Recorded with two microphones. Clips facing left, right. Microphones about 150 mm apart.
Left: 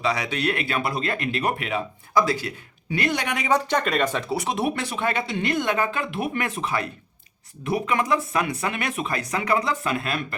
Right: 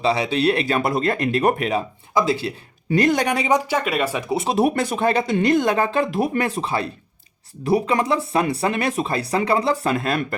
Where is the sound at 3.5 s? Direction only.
10° right (ahead or behind).